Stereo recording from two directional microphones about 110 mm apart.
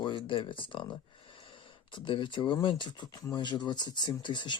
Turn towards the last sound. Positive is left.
turn(degrees=45)  # may be behind; listen again after turning